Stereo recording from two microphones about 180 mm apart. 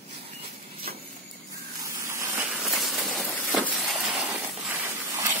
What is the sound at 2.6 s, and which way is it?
Vehicle, centre (ahead or behind).